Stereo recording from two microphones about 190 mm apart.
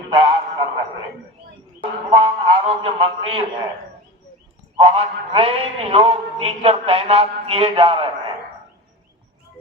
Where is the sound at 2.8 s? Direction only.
25° right (ahead or behind).